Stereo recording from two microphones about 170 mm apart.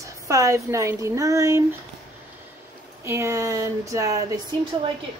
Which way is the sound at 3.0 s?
15° right (ahead or behind).